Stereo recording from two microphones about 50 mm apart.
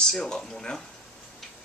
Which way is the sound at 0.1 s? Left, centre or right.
Centre.